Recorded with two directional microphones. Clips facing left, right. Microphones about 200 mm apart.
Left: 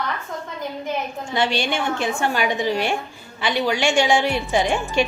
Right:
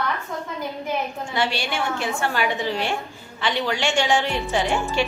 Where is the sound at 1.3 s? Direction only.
20° left (ahead or behind).